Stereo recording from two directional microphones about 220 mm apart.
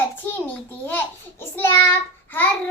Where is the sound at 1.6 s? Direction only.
10° left (ahead or behind).